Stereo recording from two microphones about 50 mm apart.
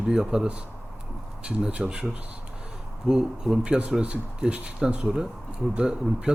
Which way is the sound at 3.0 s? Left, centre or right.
Centre.